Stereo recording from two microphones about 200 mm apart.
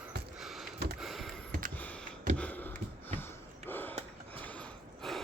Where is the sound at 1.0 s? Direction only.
Centre (ahead or behind).